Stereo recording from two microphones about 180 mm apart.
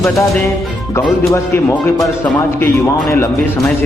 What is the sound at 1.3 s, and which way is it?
A man's voice, 15° left (ahead or behind).